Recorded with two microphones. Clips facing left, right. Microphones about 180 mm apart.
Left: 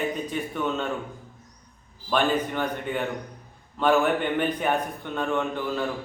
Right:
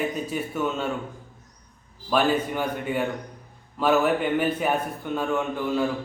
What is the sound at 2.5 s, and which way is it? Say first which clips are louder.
A man's voice: right 2 dB; 10° right (ahead or behind).